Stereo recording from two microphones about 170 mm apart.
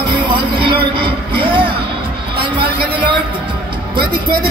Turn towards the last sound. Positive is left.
turn(degrees=-25)  # may be behind; listen again after turning